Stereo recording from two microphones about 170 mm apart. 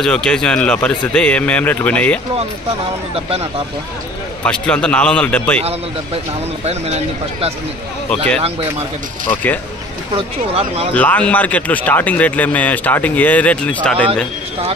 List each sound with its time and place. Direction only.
0.0 s speech: 5° left (ahead or behind)
4.5 s speech: 5° left (ahead or behind)
6.6 s speech: 40° right (ahead or behind)
9.3 s speech: 10° left (ahead or behind)
10.1 s speech: 35° right (ahead or behind)
11.0 s speech: 10° left (ahead or behind)